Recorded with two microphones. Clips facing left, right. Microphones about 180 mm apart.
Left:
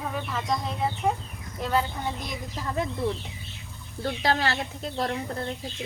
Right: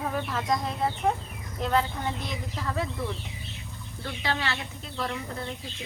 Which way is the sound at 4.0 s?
40° left (ahead or behind).